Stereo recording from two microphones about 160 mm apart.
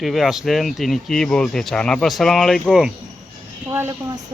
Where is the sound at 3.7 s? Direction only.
15° right (ahead or behind).